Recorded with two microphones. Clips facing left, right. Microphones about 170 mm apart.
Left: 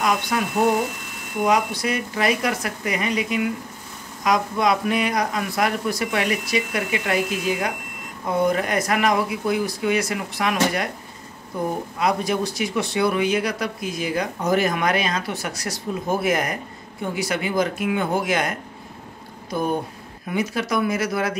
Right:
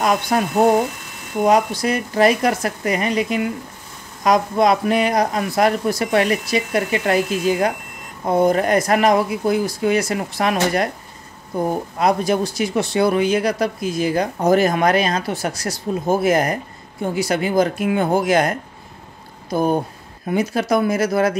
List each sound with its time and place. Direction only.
0.0 s speech: 40° right (ahead or behind)
12.0 s speech: 40° right (ahead or behind)
19.5 s speech: 35° right (ahead or behind)